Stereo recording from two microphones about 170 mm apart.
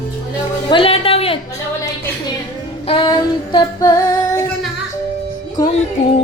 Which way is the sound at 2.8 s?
30° left (ahead or behind).